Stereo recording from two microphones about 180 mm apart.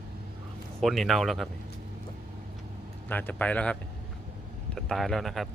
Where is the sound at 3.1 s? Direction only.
10° left (ahead or behind).